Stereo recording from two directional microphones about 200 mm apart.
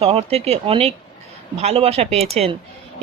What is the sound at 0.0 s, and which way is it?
A woman's voice, 30° right (ahead or behind).